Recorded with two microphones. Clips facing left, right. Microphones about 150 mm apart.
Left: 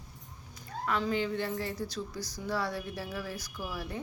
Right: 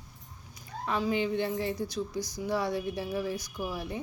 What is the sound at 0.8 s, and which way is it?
A woman's voice, 15° right (ahead or behind).